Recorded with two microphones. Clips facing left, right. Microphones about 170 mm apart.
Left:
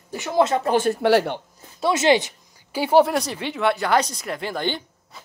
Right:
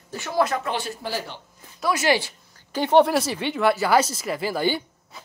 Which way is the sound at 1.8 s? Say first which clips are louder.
Left 4 dB; 25° left (ahead or behind).